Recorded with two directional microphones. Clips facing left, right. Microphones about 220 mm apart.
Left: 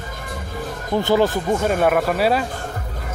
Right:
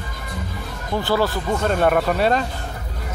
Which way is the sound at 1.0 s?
20° left (ahead or behind).